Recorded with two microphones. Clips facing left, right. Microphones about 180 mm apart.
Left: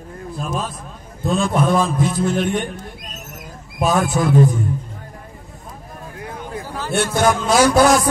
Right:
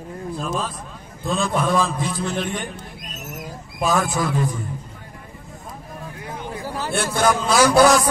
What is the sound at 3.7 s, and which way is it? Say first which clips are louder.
Speech: left 3 dB; 45° left (ahead or behind).